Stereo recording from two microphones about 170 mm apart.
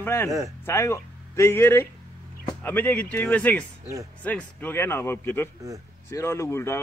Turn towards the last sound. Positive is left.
turn(degrees=15)  # may be behind; listen again after turning